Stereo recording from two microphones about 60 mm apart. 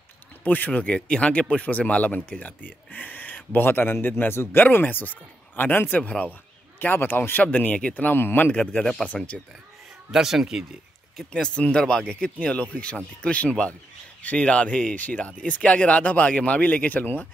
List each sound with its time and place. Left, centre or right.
0.4 s speech: left
6.8 s speech: left
8.5 s speech: centre
10.1 s speech: centre
11.4 s speech: centre
11.8 s speech: centre; by 17.3 s left